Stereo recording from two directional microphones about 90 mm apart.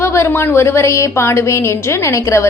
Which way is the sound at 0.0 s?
30° left (ahead or behind).